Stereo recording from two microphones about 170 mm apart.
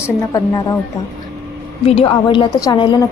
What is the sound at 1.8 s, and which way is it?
A woman's voice, 35° left (ahead or behind).